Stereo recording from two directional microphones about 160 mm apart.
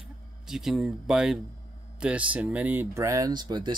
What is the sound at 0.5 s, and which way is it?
Speech, 5° right (ahead or behind).